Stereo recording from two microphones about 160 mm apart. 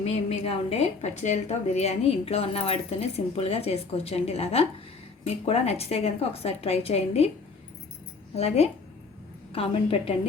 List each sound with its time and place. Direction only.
0.0 s a woman's voice: 40° left (ahead or behind)
8.4 s a woman's voice: 40° left (ahead or behind)